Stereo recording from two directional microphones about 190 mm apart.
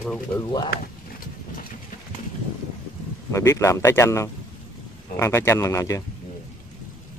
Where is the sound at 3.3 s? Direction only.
15° left (ahead or behind).